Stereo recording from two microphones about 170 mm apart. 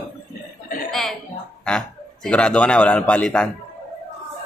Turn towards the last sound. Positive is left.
turn(degrees=5)  # may be behind; listen again after turning